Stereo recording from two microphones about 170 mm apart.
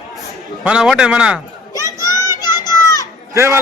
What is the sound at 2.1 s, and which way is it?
Children playing, 20° left (ahead or behind).